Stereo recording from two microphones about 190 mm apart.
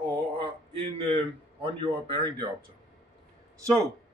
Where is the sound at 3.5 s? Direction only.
15° right (ahead or behind).